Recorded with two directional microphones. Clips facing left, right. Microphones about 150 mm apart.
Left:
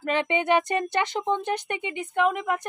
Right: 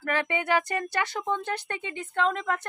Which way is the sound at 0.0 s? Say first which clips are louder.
Left 4 dB; 20° left (ahead or behind).